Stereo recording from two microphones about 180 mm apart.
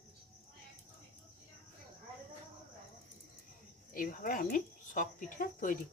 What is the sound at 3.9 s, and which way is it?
Speech, 50° left (ahead or behind).